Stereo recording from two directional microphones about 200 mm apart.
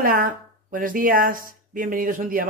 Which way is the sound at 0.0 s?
45° right (ahead or behind).